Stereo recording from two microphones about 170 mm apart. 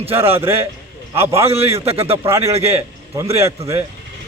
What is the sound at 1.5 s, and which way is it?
Speech, 35° right (ahead or behind).